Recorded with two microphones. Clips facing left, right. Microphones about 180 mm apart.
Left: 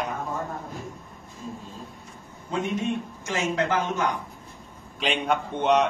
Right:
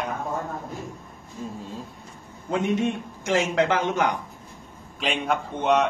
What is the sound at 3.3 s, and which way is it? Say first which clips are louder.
Speech: right 4 dB; 80° right.